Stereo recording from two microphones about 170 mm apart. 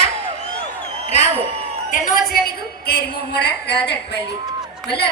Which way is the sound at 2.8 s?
75° left (ahead or behind).